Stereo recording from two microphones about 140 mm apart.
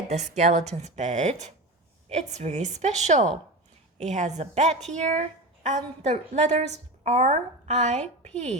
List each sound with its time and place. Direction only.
0.1 s a woman's voice: 55° right (ahead or behind)